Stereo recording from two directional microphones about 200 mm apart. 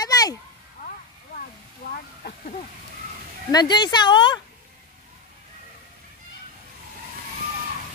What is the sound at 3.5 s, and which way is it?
Speech, 20° left (ahead or behind).